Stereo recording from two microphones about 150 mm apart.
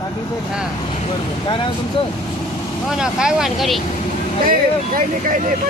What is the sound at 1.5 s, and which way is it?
Speech, 35° left (ahead or behind).